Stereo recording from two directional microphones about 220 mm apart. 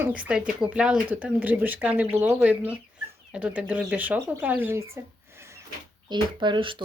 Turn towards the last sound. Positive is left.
turn(degrees=-20)  # may be behind; listen again after turning